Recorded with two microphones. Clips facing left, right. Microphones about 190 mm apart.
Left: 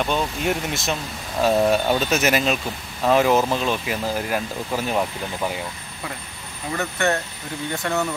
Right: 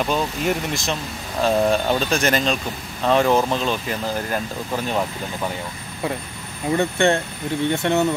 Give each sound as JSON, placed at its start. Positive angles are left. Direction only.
{"t": 0.0, "sound": "speech", "side_deg": 0}
{"t": 6.8, "sound": "speech", "side_deg": -25}